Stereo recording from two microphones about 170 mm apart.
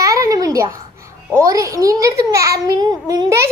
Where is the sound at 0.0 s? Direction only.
20° right (ahead or behind).